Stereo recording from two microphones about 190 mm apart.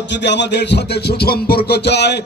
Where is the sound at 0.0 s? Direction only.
65° left (ahead or behind).